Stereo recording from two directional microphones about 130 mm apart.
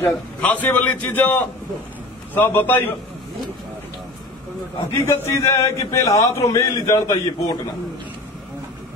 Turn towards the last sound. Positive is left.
turn(degrees=25)  # may be behind; listen again after turning